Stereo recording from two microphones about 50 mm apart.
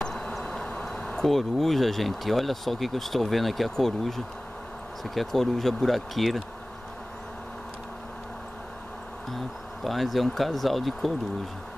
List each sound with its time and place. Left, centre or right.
0.1 s vehicle: centre
0.9 s a sound: centre
1.2 s speech: centre
9.8 s speech: centre